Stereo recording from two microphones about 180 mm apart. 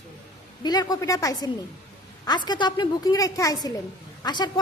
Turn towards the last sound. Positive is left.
turn(degrees=25)  # may be behind; listen again after turning